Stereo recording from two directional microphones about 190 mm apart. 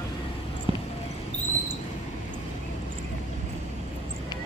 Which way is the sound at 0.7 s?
30° right (ahead or behind).